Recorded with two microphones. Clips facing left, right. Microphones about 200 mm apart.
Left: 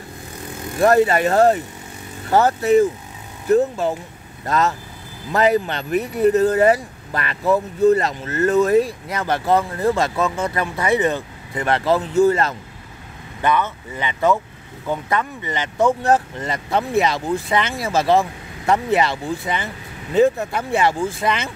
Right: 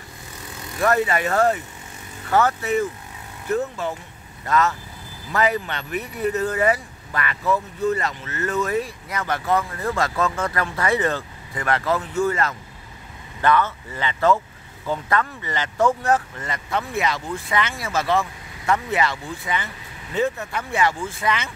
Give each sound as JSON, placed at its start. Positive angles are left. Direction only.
{"t": 0.7, "sound": "speech", "side_deg": 30}
{"t": 13.4, "sound": "speech", "side_deg": 15}
{"t": 16.0, "sound": "speech", "side_deg": 30}